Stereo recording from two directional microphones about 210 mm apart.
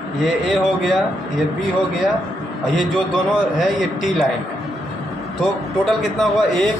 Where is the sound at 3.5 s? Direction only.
Centre (ahead or behind).